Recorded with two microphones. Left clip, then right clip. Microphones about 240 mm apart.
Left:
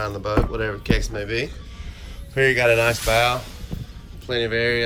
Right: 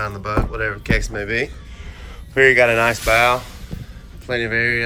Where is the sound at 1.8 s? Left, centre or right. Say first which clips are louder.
Right 3 dB; left.